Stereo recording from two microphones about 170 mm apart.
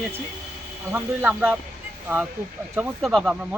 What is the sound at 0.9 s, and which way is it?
Speech, 15° right (ahead or behind).